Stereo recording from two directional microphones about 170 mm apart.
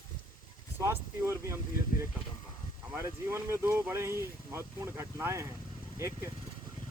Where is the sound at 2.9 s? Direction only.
15° right (ahead or behind).